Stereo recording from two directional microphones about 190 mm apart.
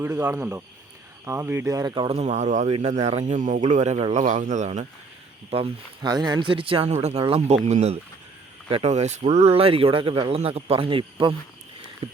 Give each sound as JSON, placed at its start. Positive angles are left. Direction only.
{"t": 0.0, "sound": "speech", "side_deg": -10}
{"t": 2.0, "sound": "speech", "side_deg": -35}